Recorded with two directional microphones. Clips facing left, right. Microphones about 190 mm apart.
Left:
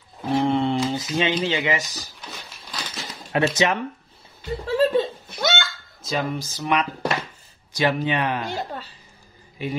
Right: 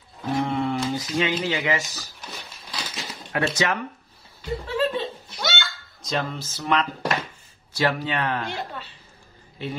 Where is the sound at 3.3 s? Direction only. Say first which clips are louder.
Left 4 dB; 20° left (ahead or behind).